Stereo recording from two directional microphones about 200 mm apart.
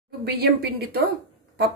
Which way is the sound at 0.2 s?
55° right (ahead or behind).